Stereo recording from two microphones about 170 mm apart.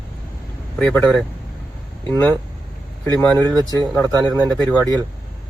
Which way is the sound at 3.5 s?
20° right (ahead or behind).